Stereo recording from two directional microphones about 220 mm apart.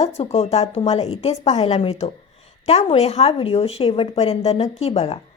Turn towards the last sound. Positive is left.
turn(degrees=25)  # may be behind; listen again after turning